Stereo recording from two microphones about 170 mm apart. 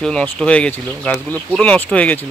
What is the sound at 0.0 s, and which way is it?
Speech, 5° left (ahead or behind).